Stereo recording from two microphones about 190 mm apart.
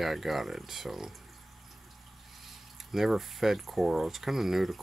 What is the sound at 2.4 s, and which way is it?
Speech, centre (ahead or behind).